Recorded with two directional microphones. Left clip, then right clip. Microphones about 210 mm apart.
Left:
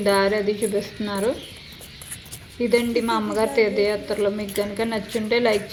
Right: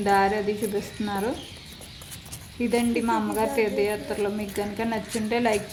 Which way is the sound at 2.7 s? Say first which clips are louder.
Left 4 dB; 10° right (ahead or behind).